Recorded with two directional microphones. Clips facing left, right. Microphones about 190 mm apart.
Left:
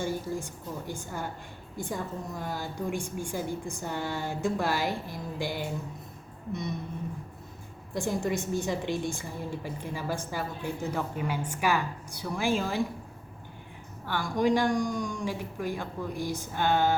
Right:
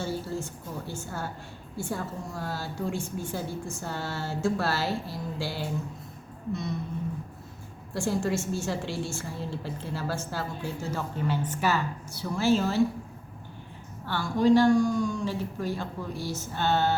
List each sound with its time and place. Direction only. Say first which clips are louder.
0.0 s a woman's voice: even; 15° left (ahead or behind)
6.5 s a sound: right 2 dB; 20° left (ahead or behind)
7.9 s a woman's voice: right 1 dB; 20° left (ahead or behind)
14.0 s a woman's voice: right 2 dB; 15° left (ahead or behind)